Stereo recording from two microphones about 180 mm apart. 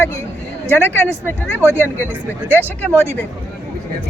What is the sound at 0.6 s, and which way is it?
Speech, 10° left (ahead or behind).